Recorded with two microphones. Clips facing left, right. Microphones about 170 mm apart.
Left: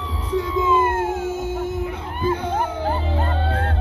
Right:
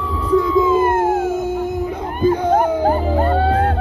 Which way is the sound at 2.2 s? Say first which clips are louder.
Right 8 dB; 45° right (ahead or behind).